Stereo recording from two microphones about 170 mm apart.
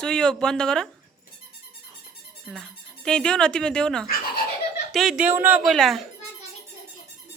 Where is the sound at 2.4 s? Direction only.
Centre (ahead or behind).